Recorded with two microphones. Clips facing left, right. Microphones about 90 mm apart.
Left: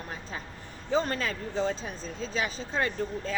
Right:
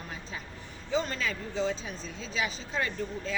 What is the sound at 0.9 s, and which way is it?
Speech, 45° left (ahead or behind).